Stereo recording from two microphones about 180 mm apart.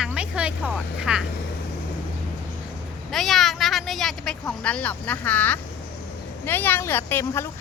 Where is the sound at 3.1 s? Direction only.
Centre (ahead or behind).